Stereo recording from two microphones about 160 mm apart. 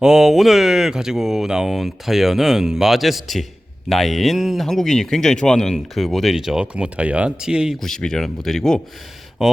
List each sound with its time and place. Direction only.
0.0 s speech: centre (ahead or behind)